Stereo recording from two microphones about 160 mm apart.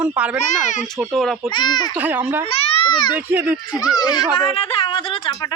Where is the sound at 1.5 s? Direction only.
30° left (ahead or behind).